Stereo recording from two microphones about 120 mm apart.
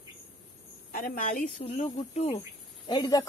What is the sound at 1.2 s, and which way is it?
Speech, 90° left.